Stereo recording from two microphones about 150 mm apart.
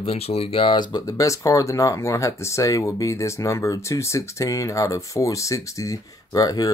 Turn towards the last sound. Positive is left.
turn(degrees=25)  # may be behind; listen again after turning